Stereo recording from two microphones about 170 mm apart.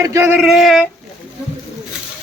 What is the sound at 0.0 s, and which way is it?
Speech, 15° right (ahead or behind).